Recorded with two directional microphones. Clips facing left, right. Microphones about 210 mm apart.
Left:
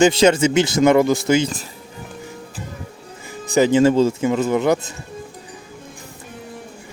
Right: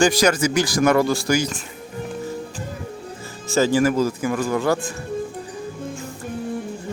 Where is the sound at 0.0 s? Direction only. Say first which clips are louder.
Left 4 dB; 25° left (ahead or behind).